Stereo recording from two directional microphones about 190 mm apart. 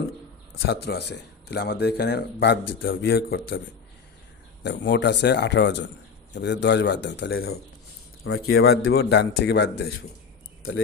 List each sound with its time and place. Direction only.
0.7 s speech: 60° left (ahead or behind)
4.6 s speech: 65° left (ahead or behind)